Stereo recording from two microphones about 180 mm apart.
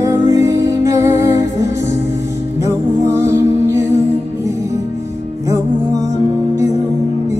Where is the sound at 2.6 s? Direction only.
15° right (ahead or behind).